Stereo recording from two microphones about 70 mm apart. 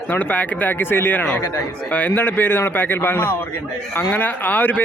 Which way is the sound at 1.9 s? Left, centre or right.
Left.